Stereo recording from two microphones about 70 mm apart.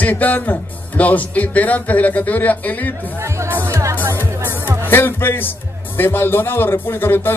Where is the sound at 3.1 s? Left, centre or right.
Right.